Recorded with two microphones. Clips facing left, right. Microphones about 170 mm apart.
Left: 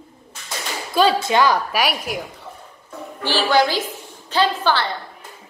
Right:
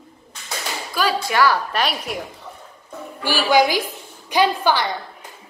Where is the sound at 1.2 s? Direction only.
20° left (ahead or behind).